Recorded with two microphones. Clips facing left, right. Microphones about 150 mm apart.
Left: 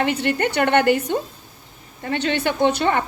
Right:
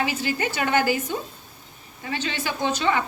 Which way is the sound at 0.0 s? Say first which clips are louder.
Left 5 dB; 65° left (ahead or behind).